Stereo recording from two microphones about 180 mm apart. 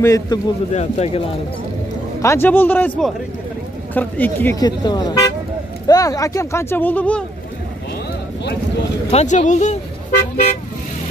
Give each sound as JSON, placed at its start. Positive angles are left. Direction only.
{"t": 0.0, "sound": "speech", "side_deg": 20}
{"t": 0.7, "sound": "speech", "side_deg": 35}
{"t": 2.2, "sound": "speech", "side_deg": 10}
{"t": 4.6, "sound": "speech", "side_deg": 25}
{"t": 9.1, "sound": "speech", "side_deg": 40}
{"t": 10.3, "sound": "vehicle", "side_deg": 40}